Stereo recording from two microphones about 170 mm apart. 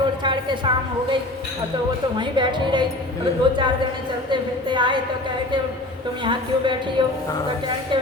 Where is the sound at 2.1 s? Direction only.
25° right (ahead or behind).